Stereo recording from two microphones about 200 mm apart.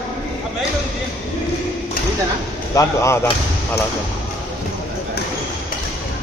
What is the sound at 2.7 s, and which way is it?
Speech, 15° left (ahead or behind).